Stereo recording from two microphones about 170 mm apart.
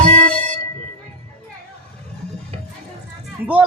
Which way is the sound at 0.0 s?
45° right (ahead or behind).